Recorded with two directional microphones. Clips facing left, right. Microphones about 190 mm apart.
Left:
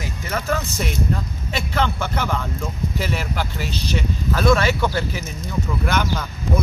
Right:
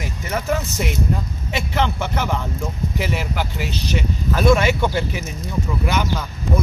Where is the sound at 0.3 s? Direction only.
15° right (ahead or behind).